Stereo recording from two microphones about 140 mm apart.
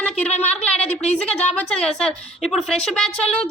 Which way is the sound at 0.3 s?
50° left (ahead or behind).